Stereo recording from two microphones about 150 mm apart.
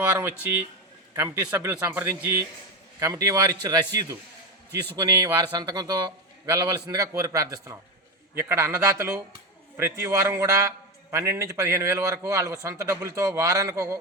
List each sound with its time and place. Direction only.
0.0 s a man's voice: 15° right (ahead or behind)
4.9 s a man's voice: 25° right (ahead or behind)